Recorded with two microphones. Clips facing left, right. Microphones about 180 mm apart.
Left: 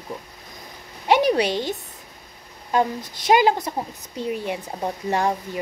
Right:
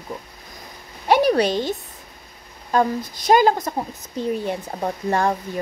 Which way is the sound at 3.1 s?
45° right (ahead or behind).